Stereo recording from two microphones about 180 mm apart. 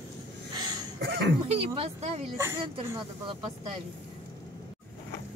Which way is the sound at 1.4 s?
35° right (ahead or behind).